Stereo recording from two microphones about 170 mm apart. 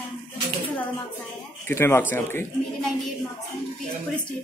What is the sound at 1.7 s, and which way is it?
Speech, 15° left (ahead or behind).